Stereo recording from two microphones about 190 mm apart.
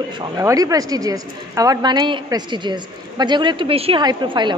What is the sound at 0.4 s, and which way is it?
A woman's voice, 15° right (ahead or behind).